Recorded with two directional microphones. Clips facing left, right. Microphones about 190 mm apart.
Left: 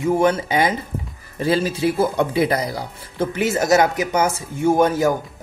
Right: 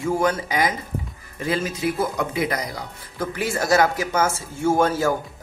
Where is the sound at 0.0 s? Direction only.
25° left (ahead or behind).